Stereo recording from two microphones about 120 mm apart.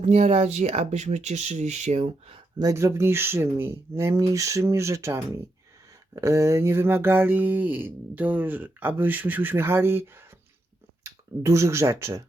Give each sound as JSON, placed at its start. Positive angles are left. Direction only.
{"t": 0.0, "sound": "speech", "side_deg": -65}
{"t": 2.6, "sound": "speech", "side_deg": -25}
{"t": 6.1, "sound": "a sound", "side_deg": -25}
{"t": 11.0, "sound": "speech", "side_deg": -25}